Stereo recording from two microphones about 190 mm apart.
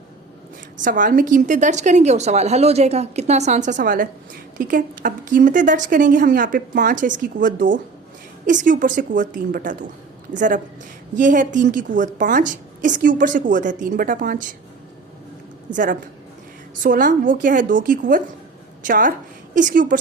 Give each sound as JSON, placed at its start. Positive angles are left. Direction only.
{"t": 0.8, "sound": "a woman's voice", "side_deg": -45}
{"t": 15.7, "sound": "a woman's voice", "side_deg": -45}